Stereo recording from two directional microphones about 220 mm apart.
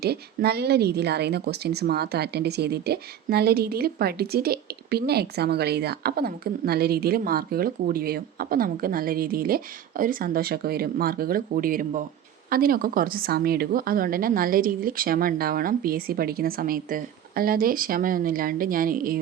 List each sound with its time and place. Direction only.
0.0 s a woman's voice: 45° right (ahead or behind)